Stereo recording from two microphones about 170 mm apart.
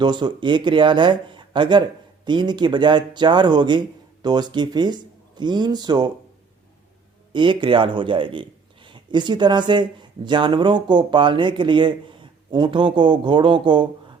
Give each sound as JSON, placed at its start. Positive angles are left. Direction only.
{"t": 0.0, "sound": "a man's voice", "side_deg": -25}
{"t": 7.3, "sound": "a man's voice", "side_deg": -30}